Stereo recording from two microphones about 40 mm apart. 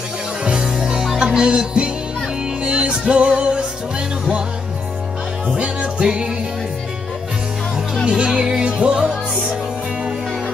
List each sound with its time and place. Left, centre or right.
0.7 s music: centre
5.5 s music: right
8.0 s speech: right
8.4 s music: right